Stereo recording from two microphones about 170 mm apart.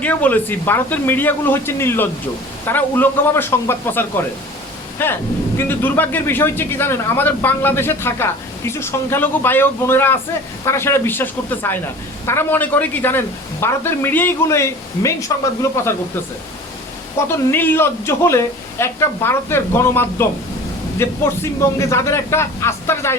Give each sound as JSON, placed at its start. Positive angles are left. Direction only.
{"t": 0.0, "sound": "a man's voice", "side_deg": 10}
{"t": 17.2, "sound": "a man's voice", "side_deg": 15}